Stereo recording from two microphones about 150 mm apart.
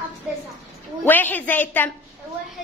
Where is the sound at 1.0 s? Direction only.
15° left (ahead or behind).